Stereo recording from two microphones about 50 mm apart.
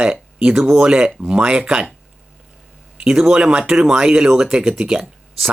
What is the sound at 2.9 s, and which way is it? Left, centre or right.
Speech, centre.